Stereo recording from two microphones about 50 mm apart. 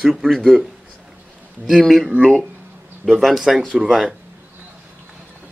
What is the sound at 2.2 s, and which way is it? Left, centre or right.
Speech, centre.